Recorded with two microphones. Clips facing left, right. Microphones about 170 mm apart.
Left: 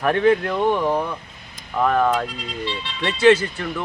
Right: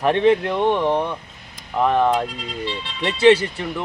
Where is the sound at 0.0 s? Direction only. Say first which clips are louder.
Right 1 dB; 25° right (ahead or behind).